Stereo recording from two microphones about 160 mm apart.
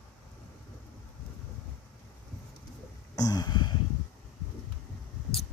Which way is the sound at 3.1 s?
25° left (ahead or behind).